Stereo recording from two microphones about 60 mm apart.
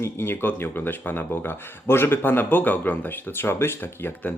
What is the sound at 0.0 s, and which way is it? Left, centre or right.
Speech, left.